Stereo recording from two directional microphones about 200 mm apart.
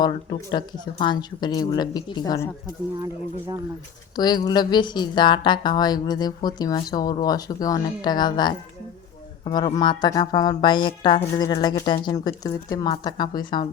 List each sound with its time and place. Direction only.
0.0 s speech: 25° left (ahead or behind)
4.1 s speech: 20° left (ahead or behind)